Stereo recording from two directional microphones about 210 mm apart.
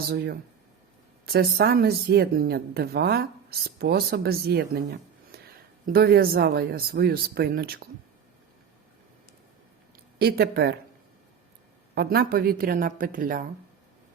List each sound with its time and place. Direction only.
1.2 s speech: 45° right (ahead or behind)
10.2 s speech: 50° right (ahead or behind)
11.9 s speech: 45° right (ahead or behind)